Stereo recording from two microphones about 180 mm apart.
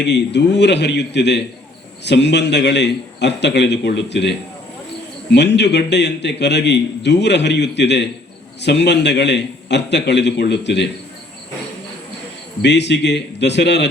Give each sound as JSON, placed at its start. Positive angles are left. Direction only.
{"t": 0.0, "sound": "a man's voice", "side_deg": 75}
{"t": 12.6, "sound": "a man's voice", "side_deg": 75}